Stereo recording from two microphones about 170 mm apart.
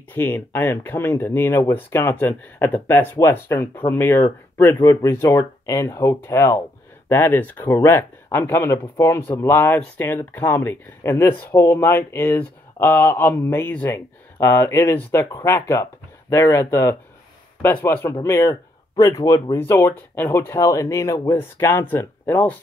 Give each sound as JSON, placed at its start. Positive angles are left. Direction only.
{"t": 0.1, "sound": "speech", "side_deg": 10}